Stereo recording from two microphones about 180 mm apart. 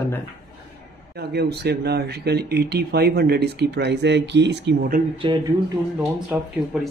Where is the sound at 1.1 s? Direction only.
65° right (ahead or behind).